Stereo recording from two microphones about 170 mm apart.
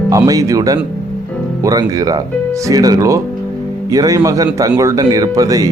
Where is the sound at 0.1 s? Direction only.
20° right (ahead or behind).